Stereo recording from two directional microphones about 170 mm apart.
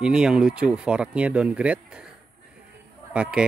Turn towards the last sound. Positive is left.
turn(degrees=-5)  # may be behind; listen again after turning